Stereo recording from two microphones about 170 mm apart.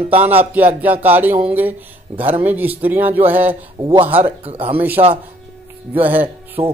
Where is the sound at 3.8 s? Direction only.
30° right (ahead or behind).